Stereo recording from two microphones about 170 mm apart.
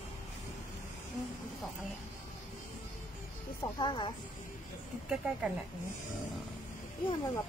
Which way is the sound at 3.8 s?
30° left (ahead or behind).